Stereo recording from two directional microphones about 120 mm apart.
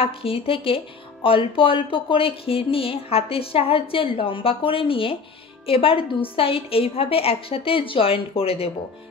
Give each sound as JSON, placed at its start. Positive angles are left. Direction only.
{"t": 0.0, "sound": "speech", "side_deg": 50}